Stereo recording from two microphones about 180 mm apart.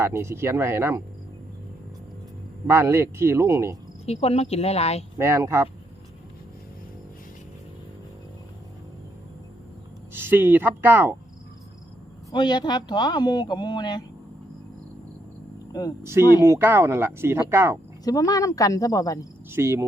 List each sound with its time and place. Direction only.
0.0 s speech: 15° right (ahead or behind)
2.6 s speech: 15° right (ahead or behind)
4.0 s speech: 35° left (ahead or behind)
5.1 s speech: 15° right (ahead or behind)
10.1 s speech: 10° right (ahead or behind)
12.3 s speech: 25° left (ahead or behind)
15.7 s speech: 20° left (ahead or behind)
16.4 s speech: 10° right (ahead or behind)
18.0 s speech: 20° left (ahead or behind)
19.5 s speech: 15° right (ahead or behind)